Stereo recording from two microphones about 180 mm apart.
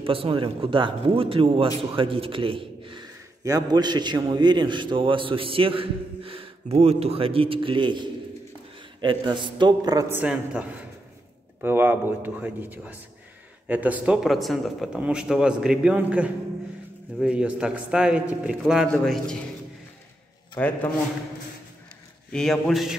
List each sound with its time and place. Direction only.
0.0 s a man's voice: 30° right (ahead or behind); by 19.3 s 5° left (ahead or behind)
20.5 s a man's voice: 10° left (ahead or behind)
22.3 s speech: centre (ahead or behind)